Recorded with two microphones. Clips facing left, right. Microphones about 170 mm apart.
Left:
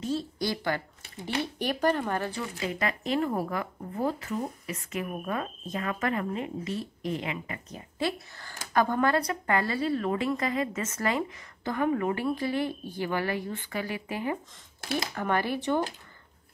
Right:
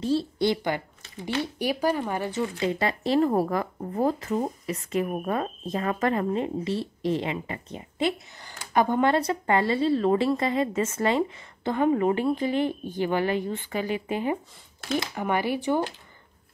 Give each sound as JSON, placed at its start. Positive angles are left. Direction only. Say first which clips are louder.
{"t": 0.0, "sound": "a woman's voice", "louder": "right 6 dB", "side_deg": -30}
{"t": 2.6, "sound": "a woman's voice", "louder": "right 3 dB", "side_deg": -30}